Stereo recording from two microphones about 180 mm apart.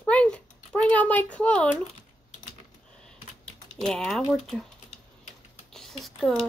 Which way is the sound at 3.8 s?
5° left (ahead or behind).